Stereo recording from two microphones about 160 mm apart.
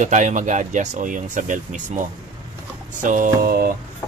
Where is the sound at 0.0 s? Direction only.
50° right (ahead or behind); by 3.7 s 65° right (ahead or behind).